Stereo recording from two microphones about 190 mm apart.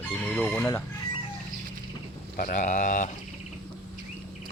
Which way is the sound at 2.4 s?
45° left (ahead or behind).